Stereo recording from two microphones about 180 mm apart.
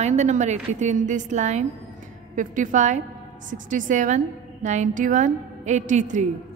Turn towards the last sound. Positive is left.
turn(degrees=-45)  # may be behind; listen again after turning